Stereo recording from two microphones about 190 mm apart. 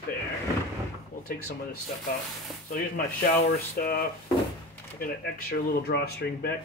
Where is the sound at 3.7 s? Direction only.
55° left (ahead or behind).